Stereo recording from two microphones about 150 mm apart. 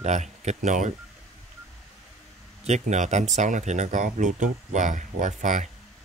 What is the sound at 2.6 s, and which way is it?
Speech, 50° right (ahead or behind).